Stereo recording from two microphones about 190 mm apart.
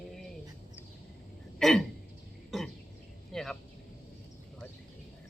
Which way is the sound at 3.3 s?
Centre (ahead or behind).